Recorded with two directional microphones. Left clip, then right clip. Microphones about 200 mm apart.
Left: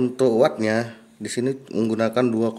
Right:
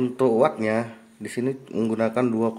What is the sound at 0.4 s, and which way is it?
Speech, 20° left (ahead or behind).